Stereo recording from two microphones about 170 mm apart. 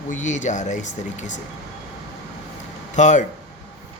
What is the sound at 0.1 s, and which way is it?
Speech, 45° left (ahead or behind).